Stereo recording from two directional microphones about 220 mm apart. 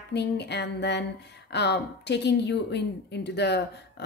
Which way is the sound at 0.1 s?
50° left (ahead or behind).